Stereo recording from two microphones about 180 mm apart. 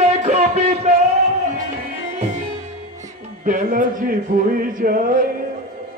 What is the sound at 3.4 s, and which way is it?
Speech, 50° right (ahead or behind).